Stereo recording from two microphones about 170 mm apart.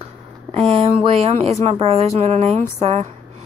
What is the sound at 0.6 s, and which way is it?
Speech, 35° right (ahead or behind).